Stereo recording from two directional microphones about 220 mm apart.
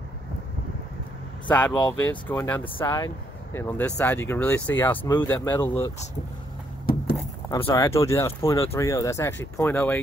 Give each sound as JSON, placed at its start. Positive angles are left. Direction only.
{"t": 1.5, "sound": "speech", "side_deg": 5}
{"t": 7.5, "sound": "speech", "side_deg": 15}